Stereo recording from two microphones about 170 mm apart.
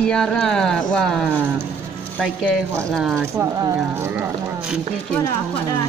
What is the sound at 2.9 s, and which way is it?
Speech, centre (ahead or behind).